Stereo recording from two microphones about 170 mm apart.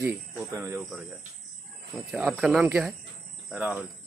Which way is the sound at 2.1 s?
5° right (ahead or behind).